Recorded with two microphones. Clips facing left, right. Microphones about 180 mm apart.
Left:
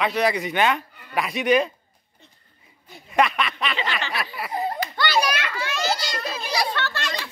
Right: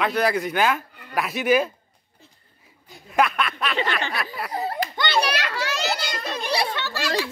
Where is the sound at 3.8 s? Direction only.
50° right (ahead or behind).